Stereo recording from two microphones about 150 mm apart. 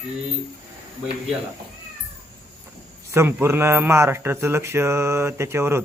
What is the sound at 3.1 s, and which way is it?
Speech, 15° right (ahead or behind).